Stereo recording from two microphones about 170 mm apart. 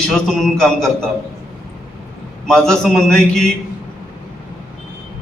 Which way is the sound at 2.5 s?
Centre (ahead or behind).